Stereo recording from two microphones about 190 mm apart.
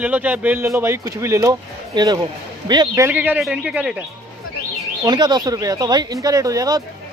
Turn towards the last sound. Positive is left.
turn(degrees=-20)  # may be behind; listen again after turning